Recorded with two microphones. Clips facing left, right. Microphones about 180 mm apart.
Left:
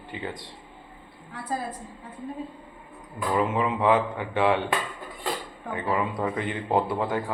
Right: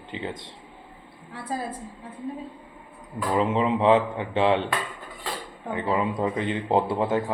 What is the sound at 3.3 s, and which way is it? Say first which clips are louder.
A man's voice: right 2 dB; 25° right (ahead or behind).